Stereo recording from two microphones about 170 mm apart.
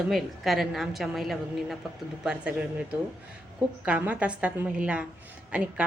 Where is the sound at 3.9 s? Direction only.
10° right (ahead or behind).